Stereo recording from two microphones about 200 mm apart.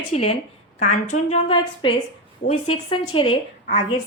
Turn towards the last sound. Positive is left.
turn(degrees=30)  # may be behind; listen again after turning